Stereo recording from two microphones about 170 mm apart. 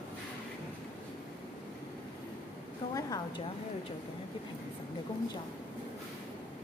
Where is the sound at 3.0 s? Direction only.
20° left (ahead or behind).